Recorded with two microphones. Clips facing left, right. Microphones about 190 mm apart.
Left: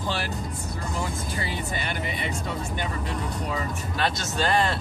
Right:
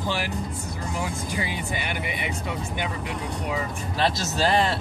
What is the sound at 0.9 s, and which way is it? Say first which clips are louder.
Speech: right 2 dB; 15° right (ahead or behind).